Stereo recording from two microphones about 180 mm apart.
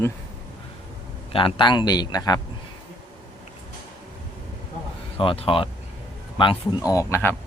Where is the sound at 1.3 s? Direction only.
30° left (ahead or behind).